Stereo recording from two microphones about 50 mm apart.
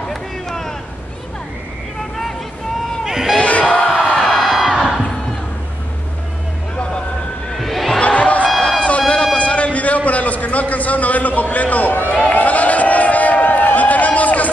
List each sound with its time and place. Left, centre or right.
0.1 s a sound: centre
3.0 s run: centre
3.3 s battle cry: left
4.2 s music: centre
7.5 s crowd: centre
8.0 s a sound: left